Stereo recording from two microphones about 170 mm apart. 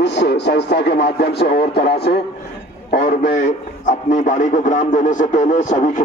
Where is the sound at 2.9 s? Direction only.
45° left (ahead or behind).